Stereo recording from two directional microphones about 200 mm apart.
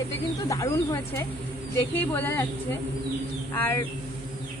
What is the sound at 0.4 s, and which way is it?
Speech, 15° left (ahead or behind).